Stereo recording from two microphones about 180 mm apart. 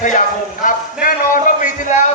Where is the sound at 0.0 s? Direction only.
45° left (ahead or behind).